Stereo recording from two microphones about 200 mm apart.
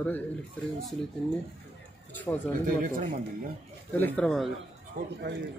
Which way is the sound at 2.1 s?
10° left (ahead or behind).